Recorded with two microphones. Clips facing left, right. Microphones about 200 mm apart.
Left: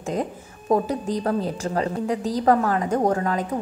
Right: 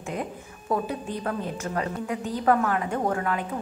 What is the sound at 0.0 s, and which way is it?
A woman's voice, 40° left (ahead or behind).